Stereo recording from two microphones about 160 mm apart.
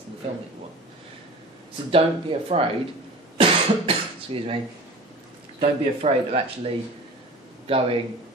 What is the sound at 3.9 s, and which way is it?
Cutlery, 35° right (ahead or behind).